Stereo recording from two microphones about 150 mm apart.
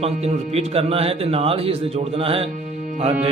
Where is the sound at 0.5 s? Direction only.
40° right (ahead or behind).